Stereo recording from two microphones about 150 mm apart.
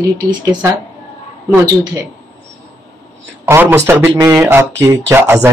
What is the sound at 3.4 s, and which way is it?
A man's voice, 15° right (ahead or behind).